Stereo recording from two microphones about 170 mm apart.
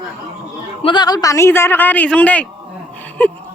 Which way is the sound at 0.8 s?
25° left (ahead or behind).